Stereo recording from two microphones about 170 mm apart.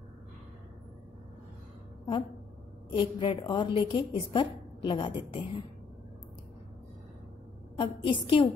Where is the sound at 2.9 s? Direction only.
30° left (ahead or behind).